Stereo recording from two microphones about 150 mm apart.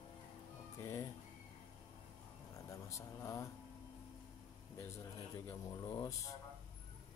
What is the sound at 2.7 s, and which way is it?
Speech, 20° left (ahead or behind).